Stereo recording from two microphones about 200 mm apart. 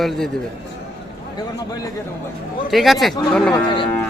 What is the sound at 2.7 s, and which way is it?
Speech, centre (ahead or behind).